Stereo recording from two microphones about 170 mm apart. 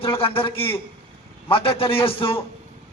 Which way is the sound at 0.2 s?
30° left (ahead or behind).